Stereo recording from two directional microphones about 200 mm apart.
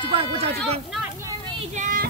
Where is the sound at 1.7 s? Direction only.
40° right (ahead or behind).